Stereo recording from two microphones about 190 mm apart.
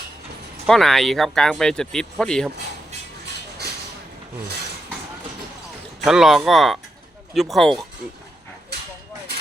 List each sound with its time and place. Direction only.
0.7 s speech: centre (ahead or behind)
6.1 s speech: centre (ahead or behind)